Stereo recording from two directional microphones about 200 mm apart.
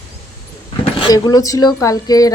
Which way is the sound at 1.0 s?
20° left (ahead or behind).